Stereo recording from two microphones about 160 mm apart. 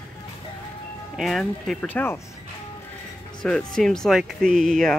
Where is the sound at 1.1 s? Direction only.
Centre (ahead or behind).